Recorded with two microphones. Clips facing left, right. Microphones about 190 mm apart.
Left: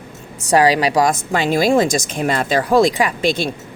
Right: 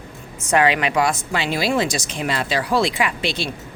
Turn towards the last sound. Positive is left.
turn(degrees=50)  # may be behind; listen again after turning